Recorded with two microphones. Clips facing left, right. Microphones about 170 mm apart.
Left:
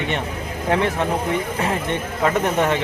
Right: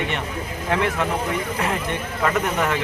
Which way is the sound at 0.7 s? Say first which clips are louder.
Left 2 dB; 30° left (ahead or behind).